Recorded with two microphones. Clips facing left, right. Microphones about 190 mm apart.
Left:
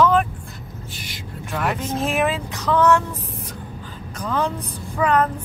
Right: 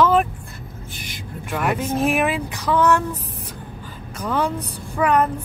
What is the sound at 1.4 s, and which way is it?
Speech, 10° right (ahead or behind).